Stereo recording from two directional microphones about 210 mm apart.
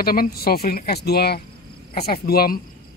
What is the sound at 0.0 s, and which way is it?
Speech, 45° left (ahead or behind).